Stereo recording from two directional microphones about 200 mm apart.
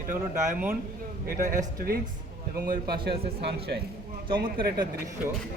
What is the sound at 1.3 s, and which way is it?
Speech, 40° right (ahead or behind).